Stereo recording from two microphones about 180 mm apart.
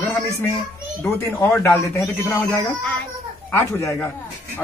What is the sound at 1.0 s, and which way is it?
Speech, 15° left (ahead or behind).